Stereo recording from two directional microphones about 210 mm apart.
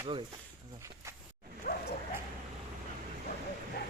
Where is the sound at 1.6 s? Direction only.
45° left (ahead or behind).